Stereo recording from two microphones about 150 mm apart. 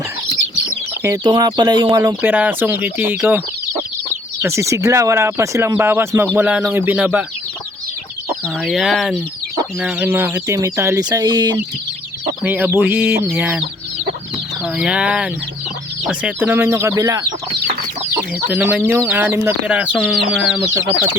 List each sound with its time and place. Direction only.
1.0 s speech: 25° right (ahead or behind); by 3.4 s 10° right (ahead or behind)
4.4 s speech: 20° right (ahead or behind)
8.6 s speech: centre (ahead or behind)
9.8 s speech: 15° right (ahead or behind); by 11.5 s 30° right (ahead or behind)
12.4 s speech: 10° right (ahead or behind)
18.4 s speech: 10° right (ahead or behind)